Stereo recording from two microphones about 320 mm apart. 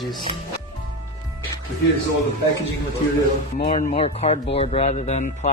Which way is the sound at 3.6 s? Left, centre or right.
Left.